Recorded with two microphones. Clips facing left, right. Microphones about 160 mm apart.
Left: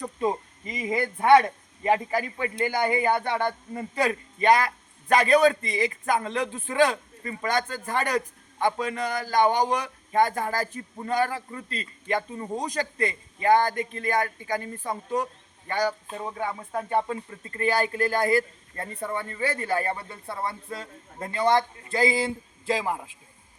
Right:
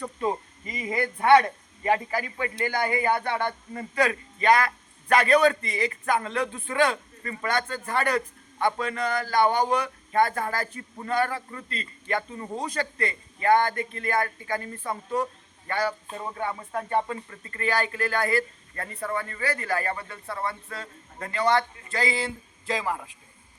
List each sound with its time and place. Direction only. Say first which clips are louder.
0.0 s a man's voice: left 1 dB; 15° left (ahead or behind)
5.2 s a man's voice: left 1 dB; 5° left (ahead or behind)
5.6 s a man's voice: left 1 dB; 20° left (ahead or behind)